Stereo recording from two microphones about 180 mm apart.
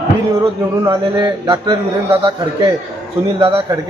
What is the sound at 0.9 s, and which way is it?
Speech, 20° right (ahead or behind).